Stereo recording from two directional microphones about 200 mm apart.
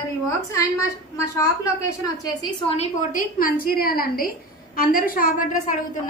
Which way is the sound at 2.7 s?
35° left (ahead or behind).